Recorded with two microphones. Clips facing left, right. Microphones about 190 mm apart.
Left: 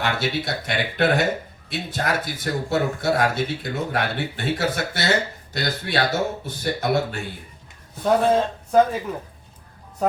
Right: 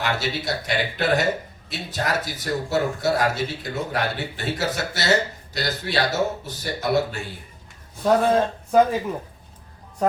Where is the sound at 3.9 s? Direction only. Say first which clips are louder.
Left 1 dB; 55° left (ahead or behind).